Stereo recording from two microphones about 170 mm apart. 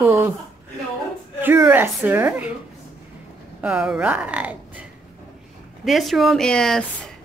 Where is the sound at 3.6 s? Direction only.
5° right (ahead or behind).